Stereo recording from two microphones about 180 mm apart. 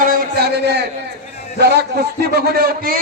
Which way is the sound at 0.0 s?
50° right (ahead or behind).